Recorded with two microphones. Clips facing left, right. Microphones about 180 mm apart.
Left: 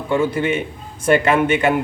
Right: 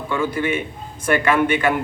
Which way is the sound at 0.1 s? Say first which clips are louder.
Left 4 dB; 25° left (ahead or behind).